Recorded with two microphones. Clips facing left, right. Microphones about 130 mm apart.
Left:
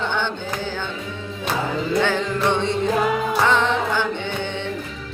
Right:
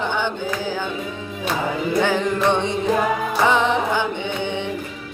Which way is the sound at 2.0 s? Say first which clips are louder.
Right 2 dB; 15° right (ahead or behind).